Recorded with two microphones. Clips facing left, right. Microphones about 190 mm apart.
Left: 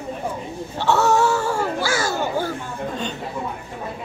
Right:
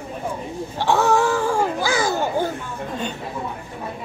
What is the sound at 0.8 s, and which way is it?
Babbling, 15° right (ahead or behind).